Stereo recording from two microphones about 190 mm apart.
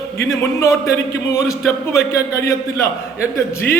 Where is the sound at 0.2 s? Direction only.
15° left (ahead or behind).